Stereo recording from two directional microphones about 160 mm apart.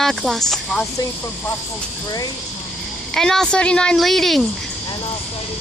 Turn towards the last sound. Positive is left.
turn(degrees=0)  # may be behind; listen again after turning